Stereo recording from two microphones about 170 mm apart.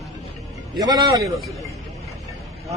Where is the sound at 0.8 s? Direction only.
20° right (ahead or behind).